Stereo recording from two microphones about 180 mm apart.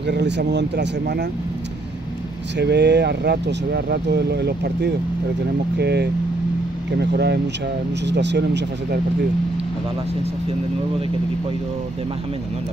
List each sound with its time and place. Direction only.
0.0 s speech: 75° right (ahead or behind)
2.5 s speech: 70° right (ahead or behind)